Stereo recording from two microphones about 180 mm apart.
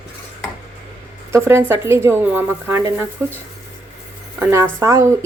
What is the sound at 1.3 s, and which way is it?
Speech, 15° right (ahead or behind).